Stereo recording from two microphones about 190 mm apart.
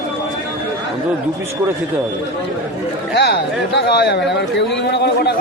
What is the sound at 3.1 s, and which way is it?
Speech, 60° left (ahead or behind).